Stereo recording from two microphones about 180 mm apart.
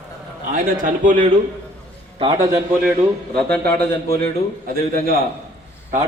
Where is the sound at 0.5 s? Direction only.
45° right (ahead or behind).